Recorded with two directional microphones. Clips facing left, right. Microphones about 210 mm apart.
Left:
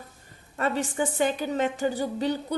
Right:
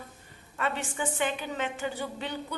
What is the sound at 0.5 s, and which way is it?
A woman's voice, 40° left (ahead or behind).